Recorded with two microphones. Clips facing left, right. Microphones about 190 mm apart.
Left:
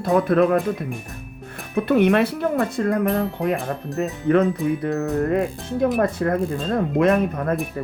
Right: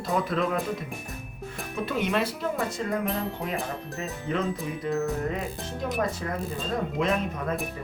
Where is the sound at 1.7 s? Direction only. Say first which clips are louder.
Left 10 dB; 60° left (ahead or behind).